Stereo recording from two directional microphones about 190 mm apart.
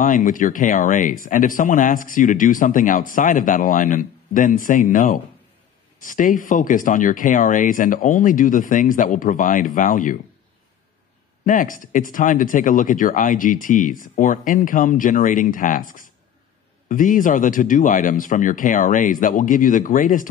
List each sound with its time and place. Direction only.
0.0 s speech: 45° left (ahead or behind)
11.4 s speech: 45° left (ahead or behind)